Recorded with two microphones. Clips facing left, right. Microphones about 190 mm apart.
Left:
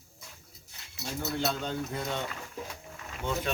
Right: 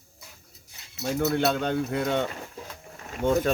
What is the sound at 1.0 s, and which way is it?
Speech, 60° right (ahead or behind).